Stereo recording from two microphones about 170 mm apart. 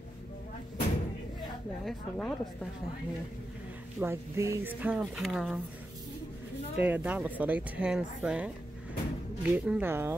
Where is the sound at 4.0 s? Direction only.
15° right (ahead or behind); by 5.6 s centre (ahead or behind).